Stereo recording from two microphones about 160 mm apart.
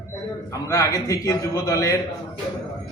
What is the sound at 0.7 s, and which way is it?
A man's voice, 20° left (ahead or behind).